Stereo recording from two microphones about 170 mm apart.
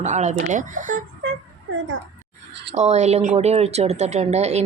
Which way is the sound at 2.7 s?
40° right (ahead or behind).